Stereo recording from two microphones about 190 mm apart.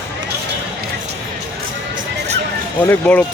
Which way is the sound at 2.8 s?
10° left (ahead or behind).